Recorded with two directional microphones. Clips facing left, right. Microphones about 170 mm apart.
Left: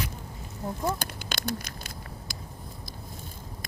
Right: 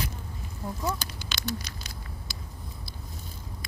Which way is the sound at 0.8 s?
55° left (ahead or behind).